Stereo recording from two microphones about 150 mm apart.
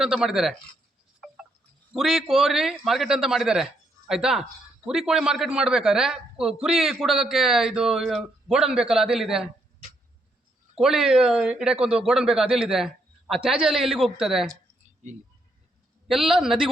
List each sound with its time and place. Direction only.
0.0 s speech: 5° right (ahead or behind)
1.9 s speech: centre (ahead or behind)
10.8 s speech: 5° right (ahead or behind)
16.0 s speech: centre (ahead or behind)